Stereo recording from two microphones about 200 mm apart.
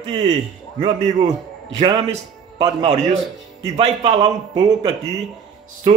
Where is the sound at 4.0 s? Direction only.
20° right (ahead or behind).